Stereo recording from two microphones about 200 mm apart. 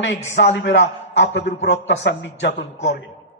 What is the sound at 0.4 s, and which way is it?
A man's voice, 65° left (ahead or behind).